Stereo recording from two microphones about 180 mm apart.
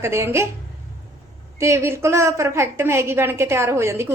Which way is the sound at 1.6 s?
15° right (ahead or behind).